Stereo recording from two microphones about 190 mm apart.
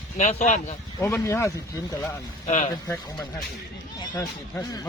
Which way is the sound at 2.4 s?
40° left (ahead or behind).